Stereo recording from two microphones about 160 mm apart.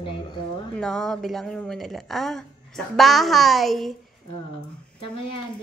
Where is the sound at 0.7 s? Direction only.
5° left (ahead or behind).